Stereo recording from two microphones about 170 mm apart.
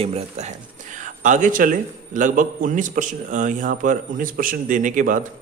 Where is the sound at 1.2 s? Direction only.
50° right (ahead or behind).